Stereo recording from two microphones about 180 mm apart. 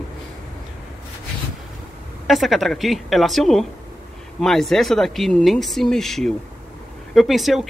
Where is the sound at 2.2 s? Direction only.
Centre (ahead or behind).